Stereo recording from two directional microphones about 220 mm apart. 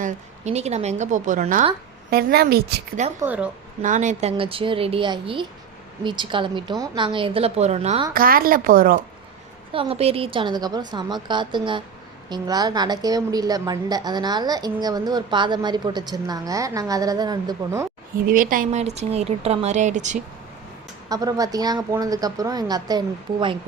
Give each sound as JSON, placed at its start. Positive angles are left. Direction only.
{"t": 0.0, "sound": "a woman's voice", "side_deg": -30}
{"t": 3.2, "sound": "a woman's voice", "side_deg": -5}
{"t": 3.8, "sound": "a woman's voice", "side_deg": -35}
{"t": 8.1, "sound": "speech", "side_deg": -40}
{"t": 9.7, "sound": "a woman's voice", "side_deg": -25}
{"t": 18.3, "sound": "speech", "side_deg": -40}
{"t": 21.1, "sound": "a woman's voice", "side_deg": -15}